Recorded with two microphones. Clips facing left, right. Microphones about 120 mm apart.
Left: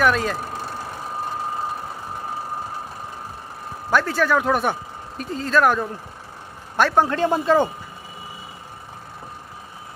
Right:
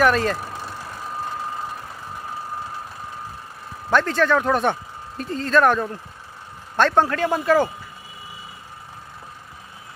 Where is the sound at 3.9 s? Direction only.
5° left (ahead or behind).